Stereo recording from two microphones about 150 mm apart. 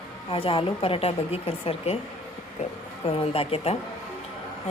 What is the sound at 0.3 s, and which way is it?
Speech, 40° left (ahead or behind).